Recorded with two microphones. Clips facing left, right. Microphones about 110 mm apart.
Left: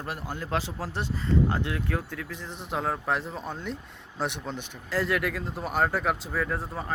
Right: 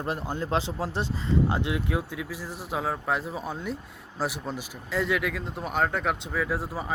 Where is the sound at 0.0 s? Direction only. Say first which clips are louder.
Right 4 dB; 25° right (ahead or behind).